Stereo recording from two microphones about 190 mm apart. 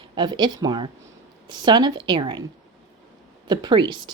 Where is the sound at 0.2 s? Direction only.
25° right (ahead or behind).